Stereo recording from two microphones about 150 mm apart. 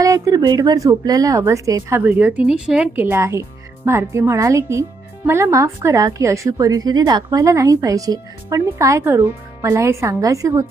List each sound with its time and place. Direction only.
0.0 s speech: 20° right (ahead or behind)